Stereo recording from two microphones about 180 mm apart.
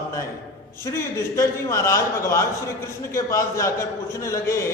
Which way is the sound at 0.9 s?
15° left (ahead or behind).